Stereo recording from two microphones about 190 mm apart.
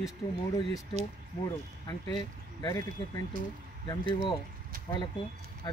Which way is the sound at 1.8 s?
20° left (ahead or behind).